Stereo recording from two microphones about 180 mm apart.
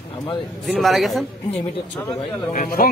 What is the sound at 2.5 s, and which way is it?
Speech, 50° left (ahead or behind).